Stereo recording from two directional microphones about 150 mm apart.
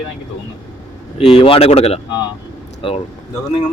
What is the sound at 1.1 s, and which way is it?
Speech, 40° left (ahead or behind).